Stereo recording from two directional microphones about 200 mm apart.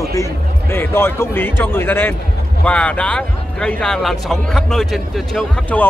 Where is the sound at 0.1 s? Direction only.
15° left (ahead or behind).